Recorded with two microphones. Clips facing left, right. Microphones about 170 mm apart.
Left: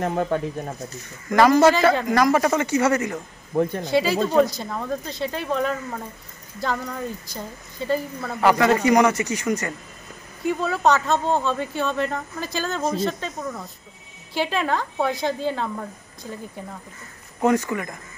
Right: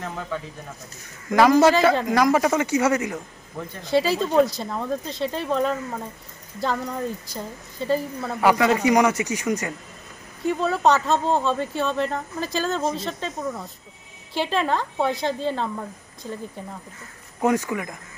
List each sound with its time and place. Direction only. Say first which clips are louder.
0.0 s speech: left 8 dB; 50° left (ahead or behind)
1.3 s a man's voice: even; 5° right (ahead or behind)
3.5 s speech: left 13 dB; 65° left (ahead or behind)
3.9 s a man's voice: right 1 dB; centre (ahead or behind)
7.3 s a woman's voice: right 1 dB; centre (ahead or behind)
10.4 s a man's voice: right 1 dB; 5° left (ahead or behind)
17.4 s a man's voice: left 1 dB; 5° right (ahead or behind)